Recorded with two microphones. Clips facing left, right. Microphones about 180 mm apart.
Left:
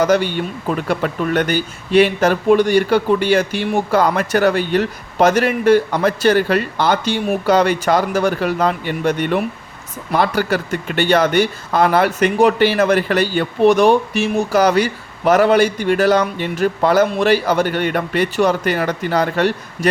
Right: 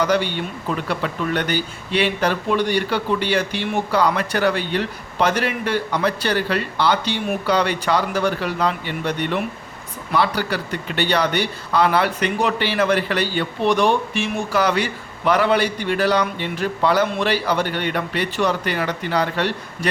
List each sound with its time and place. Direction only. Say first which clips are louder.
0.0 s a man's voice: left 4 dB; 45° left (ahead or behind)